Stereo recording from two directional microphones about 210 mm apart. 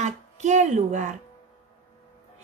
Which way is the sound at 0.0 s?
35° right (ahead or behind).